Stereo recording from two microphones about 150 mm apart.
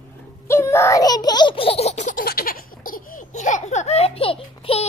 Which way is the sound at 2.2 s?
80° left.